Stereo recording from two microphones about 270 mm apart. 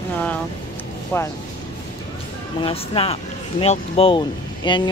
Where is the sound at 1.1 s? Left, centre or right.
Centre.